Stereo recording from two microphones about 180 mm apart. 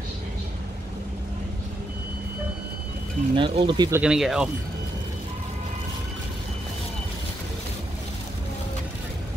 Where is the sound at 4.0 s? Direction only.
5° right (ahead or behind).